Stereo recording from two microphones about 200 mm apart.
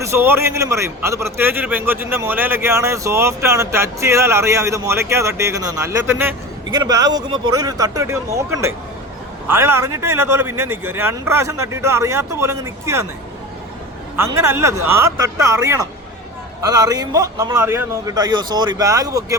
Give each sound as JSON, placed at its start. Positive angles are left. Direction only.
{"t": 0.0, "sound": "a man's voice", "side_deg": -10}
{"t": 14.3, "sound": "a man's voice", "side_deg": -10}